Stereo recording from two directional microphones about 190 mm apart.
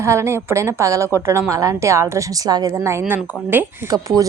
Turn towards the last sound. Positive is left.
turn(degrees=-15)  # may be behind; listen again after turning